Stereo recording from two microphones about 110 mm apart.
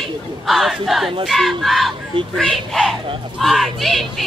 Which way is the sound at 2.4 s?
5° left (ahead or behind).